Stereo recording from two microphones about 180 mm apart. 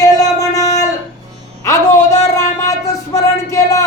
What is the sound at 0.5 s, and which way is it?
Music, 20° left (ahead or behind).